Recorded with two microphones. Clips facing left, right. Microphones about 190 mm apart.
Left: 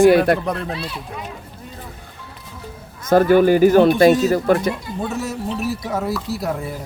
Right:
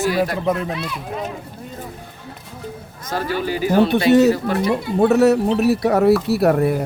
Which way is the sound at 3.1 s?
50° left (ahead or behind).